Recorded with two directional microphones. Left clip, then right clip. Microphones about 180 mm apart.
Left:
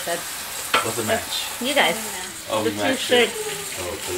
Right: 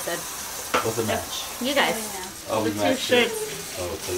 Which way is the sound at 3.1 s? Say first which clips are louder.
Left 3 dB; 15° left (ahead or behind).